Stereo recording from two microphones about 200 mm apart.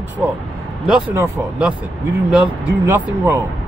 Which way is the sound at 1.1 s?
10° right (ahead or behind).